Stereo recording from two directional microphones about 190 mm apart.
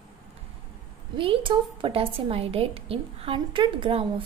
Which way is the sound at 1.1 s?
25° right (ahead or behind).